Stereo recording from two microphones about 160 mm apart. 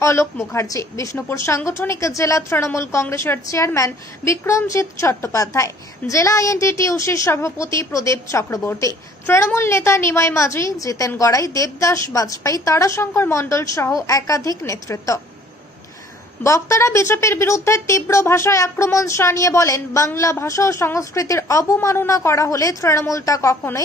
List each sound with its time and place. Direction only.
0.0 s a woman's voice: 15° left (ahead or behind)
16.4 s a woman's voice: 20° left (ahead or behind)